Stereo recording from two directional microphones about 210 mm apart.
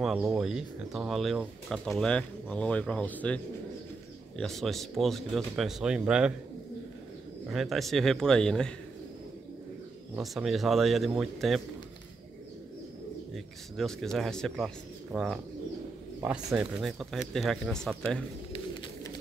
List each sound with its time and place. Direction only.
0.0 s speech: 5° right (ahead or behind)
4.4 s speech: centre (ahead or behind)
7.4 s speech: centre (ahead or behind)
10.1 s speech: centre (ahead or behind)
13.3 s speech: centre (ahead or behind)
18.5 s a sound: 20° left (ahead or behind)